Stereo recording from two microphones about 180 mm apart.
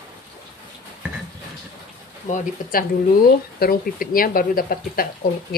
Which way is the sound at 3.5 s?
55° left (ahead or behind).